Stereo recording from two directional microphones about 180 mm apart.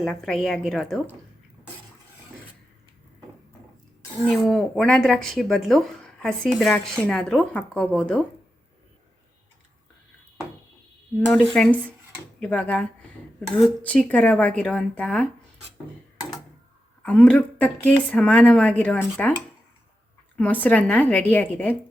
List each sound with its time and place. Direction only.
0.0 s speech: centre (ahead or behind)
4.3 s speech: centre (ahead or behind)
11.3 s speech: 5° left (ahead or behind)
17.0 s speech: 10° left (ahead or behind)
20.3 s speech: 10° left (ahead or behind)